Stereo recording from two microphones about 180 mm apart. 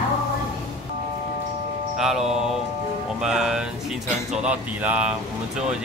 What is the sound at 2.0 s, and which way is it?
Speech, 5° right (ahead or behind).